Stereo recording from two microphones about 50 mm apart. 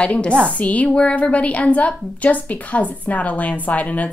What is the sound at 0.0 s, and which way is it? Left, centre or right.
A woman's voice, left.